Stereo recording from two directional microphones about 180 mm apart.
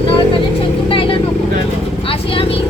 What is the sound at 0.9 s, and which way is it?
Speech, 30° left (ahead or behind).